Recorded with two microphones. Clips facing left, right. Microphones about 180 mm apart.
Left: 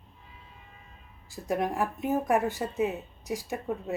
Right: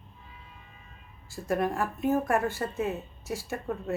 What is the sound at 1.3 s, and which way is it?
Speech, 15° left (ahead or behind).